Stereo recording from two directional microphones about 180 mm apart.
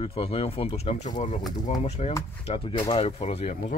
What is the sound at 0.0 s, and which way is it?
Speech, 30° left (ahead or behind).